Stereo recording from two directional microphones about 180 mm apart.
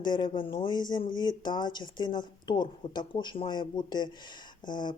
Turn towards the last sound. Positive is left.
turn(degrees=25)  # may be behind; listen again after turning